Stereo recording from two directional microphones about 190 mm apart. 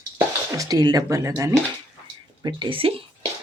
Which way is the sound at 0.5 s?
20° right (ahead or behind).